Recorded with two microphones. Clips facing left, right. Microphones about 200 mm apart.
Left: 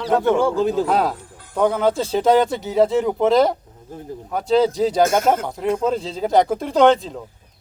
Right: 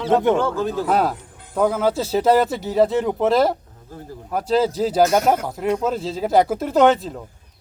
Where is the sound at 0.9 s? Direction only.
5° right (ahead or behind).